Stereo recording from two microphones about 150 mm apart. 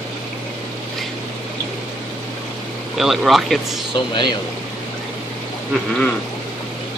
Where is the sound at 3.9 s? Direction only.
30° left (ahead or behind).